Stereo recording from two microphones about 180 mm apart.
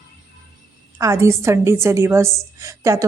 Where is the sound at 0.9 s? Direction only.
15° right (ahead or behind).